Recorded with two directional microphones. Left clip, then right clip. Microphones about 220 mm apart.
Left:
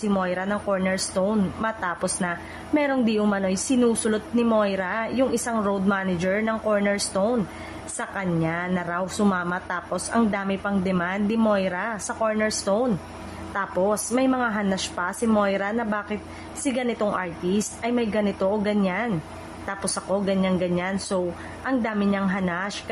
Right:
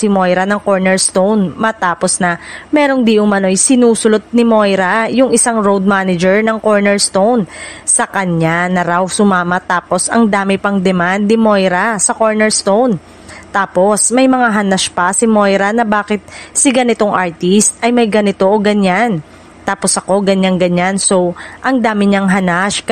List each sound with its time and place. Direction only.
0.0 s speech: 45° right (ahead or behind)